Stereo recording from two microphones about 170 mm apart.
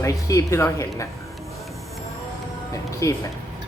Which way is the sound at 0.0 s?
20° left (ahead or behind).